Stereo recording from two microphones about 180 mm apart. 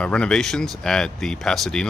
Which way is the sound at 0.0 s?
5° left (ahead or behind).